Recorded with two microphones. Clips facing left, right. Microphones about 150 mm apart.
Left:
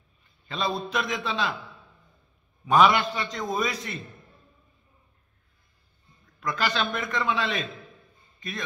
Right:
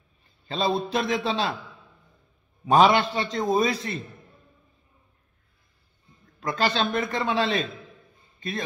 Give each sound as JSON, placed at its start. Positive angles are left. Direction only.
{"t": 0.5, "sound": "a man's voice", "side_deg": -30}
{"t": 2.7, "sound": "a man's voice", "side_deg": -30}
{"t": 6.4, "sound": "a man's voice", "side_deg": -30}